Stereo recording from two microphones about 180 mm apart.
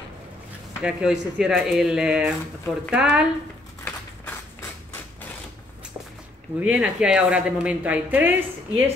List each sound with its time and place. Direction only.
0.8 s speech: 5° right (ahead or behind)
3.8 s a sound: 10° left (ahead or behind)
6.6 s a woman's voice: 5° right (ahead or behind)